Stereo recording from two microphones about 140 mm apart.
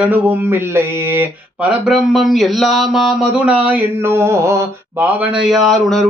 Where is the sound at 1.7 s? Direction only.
5° right (ahead or behind).